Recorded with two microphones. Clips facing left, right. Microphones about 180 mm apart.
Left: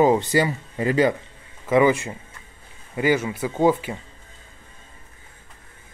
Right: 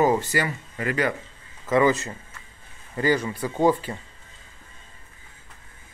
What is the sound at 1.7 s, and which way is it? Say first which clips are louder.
Speech: left 2 dB; 10° left (ahead or behind).